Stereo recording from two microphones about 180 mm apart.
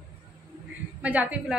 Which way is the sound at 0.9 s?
5° right (ahead or behind).